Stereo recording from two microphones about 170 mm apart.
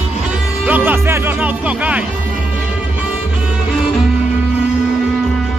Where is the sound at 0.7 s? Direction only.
10° right (ahead or behind).